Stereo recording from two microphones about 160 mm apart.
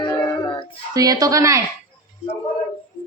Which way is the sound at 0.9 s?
25° right (ahead or behind).